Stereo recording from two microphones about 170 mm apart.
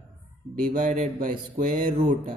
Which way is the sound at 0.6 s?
50° right (ahead or behind).